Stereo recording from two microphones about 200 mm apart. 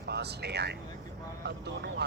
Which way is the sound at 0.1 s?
55° right (ahead or behind).